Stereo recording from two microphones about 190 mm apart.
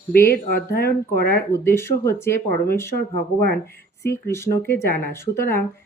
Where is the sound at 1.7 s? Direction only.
15° left (ahead or behind).